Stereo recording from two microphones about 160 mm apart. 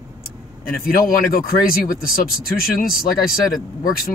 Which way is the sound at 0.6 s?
65° left (ahead or behind).